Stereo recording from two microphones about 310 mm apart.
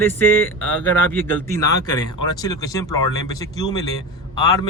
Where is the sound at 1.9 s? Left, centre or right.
Left.